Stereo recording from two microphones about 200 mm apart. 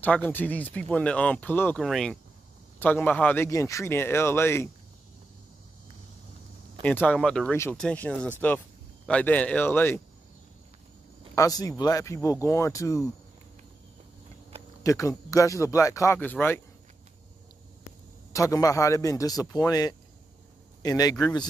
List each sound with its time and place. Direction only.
0.0 s speech: 10° left (ahead or behind)
6.8 s speech: 5° left (ahead or behind)
7.5 s speech: 15° left (ahead or behind)
11.3 s speech: 15° left (ahead or behind)
14.8 s speech: 15° left (ahead or behind)
18.3 s a man's voice: 15° left (ahead or behind)